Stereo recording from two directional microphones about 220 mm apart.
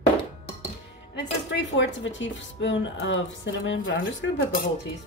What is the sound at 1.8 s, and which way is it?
Speech, 55° left (ahead or behind).